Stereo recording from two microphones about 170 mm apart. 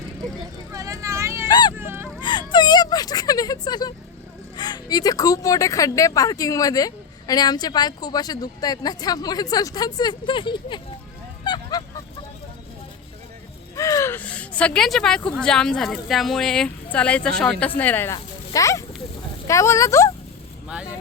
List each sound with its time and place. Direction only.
0.7 s vehicle: 20° right (ahead or behind)
1.5 s vehicle: 25° left (ahead or behind)
1.7 s a sound: 15° right (ahead or behind)
2.2 s whimper: 25° left (ahead or behind)
4.5 s speech: 25° left (ahead or behind)
11.4 s goose: 25° left (ahead or behind)
13.7 s speech: 20° left (ahead or behind)